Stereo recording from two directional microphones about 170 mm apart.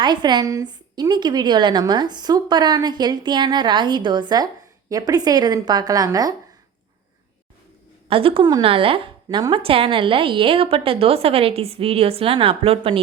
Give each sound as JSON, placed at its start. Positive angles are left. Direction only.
{"t": 0.0, "sound": "a woman's voice", "side_deg": -25}
{"t": 8.0, "sound": "a woman's voice", "side_deg": -35}